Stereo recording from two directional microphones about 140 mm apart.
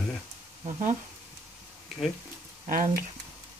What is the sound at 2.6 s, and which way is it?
Speech, 70° right (ahead or behind).